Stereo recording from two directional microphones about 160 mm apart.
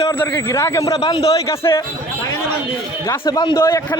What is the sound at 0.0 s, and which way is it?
A man's voice, 15° left (ahead or behind).